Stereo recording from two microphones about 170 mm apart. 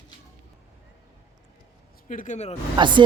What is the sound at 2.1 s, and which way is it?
Speech, 50° left (ahead or behind).